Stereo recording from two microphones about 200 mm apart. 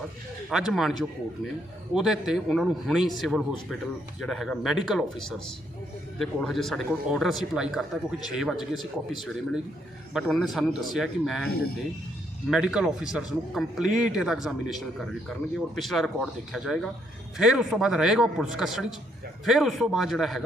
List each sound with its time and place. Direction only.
0.5 s speech: centre (ahead or behind)
11.4 s speech: 50° left (ahead or behind)
12.5 s speech: 5° right (ahead or behind)